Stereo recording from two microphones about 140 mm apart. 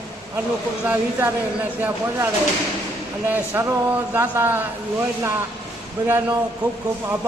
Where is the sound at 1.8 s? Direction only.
15° right (ahead or behind).